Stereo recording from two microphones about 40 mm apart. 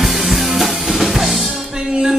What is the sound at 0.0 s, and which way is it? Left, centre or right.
Music, centre.